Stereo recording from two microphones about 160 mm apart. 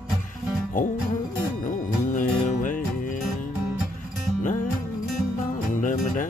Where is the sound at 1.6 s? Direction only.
55° left (ahead or behind).